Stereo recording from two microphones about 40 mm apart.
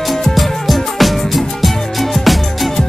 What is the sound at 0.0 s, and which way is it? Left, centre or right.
Music, centre.